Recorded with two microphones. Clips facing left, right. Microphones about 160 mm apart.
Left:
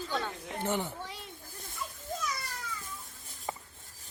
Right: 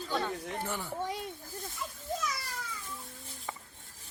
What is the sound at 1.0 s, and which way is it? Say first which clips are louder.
Snake: right 8 dB; 50° right (ahead or behind).